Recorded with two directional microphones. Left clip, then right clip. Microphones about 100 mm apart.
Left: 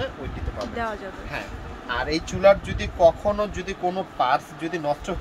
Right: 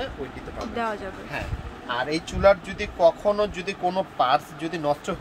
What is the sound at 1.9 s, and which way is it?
Speech, 20° right (ahead or behind).